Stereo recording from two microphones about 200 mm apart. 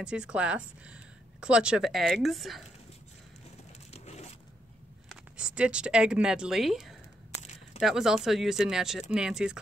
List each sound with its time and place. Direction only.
0.0 s speech: 5° right (ahead or behind)
3.9 s crushing: 35° left (ahead or behind)
5.1 s speech: 5° right (ahead or behind)
7.4 s a sound: 35° left (ahead or behind)
7.8 s speech: centre (ahead or behind)